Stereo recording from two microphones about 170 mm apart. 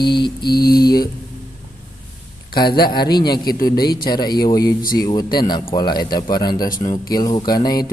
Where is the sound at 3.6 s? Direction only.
60° left (ahead or behind).